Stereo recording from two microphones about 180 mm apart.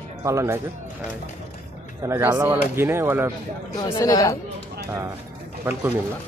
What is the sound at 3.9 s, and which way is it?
Speech, 20° left (ahead or behind).